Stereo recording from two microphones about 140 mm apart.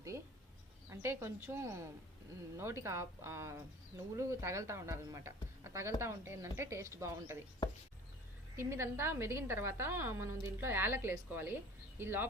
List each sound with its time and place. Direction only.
0.9 s speech: 20° right (ahead or behind)
8.5 s a woman's voice: 20° right (ahead or behind)